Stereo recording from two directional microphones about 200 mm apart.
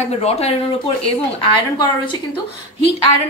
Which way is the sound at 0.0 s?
30° left (ahead or behind).